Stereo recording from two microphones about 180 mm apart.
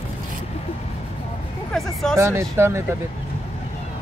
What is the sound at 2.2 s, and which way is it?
Speech, 15° right (ahead or behind).